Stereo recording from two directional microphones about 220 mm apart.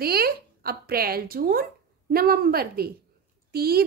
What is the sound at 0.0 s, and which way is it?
A woman's voice, 45° right (ahead or behind).